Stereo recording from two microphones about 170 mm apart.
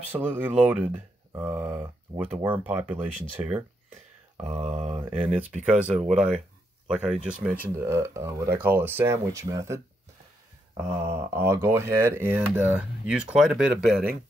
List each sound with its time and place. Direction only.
0.1 s speech: 10° right (ahead or behind)
4.4 s mantra: 40° right (ahead or behind)
5.1 s speech: 10° right (ahead or behind)
11.2 s speech: 15° right (ahead or behind)